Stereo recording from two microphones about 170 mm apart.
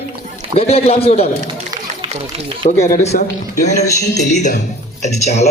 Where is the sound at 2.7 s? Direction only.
45° left (ahead or behind).